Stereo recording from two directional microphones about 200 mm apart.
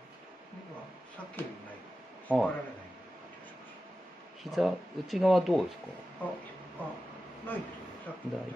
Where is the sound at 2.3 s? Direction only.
10° left (ahead or behind).